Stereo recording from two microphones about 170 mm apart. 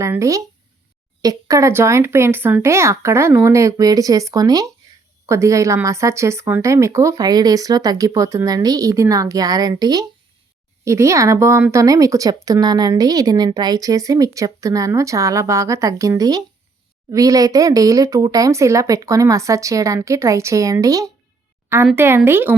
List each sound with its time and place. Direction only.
0.0 s speech: 15° right (ahead or behind)